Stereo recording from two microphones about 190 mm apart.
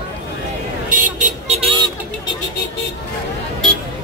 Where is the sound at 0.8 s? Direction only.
45° right (ahead or behind).